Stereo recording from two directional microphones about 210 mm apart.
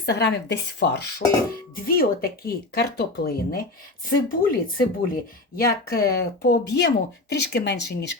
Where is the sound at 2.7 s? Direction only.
50° left (ahead or behind).